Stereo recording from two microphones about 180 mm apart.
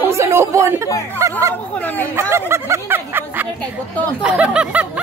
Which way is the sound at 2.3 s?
15° right (ahead or behind).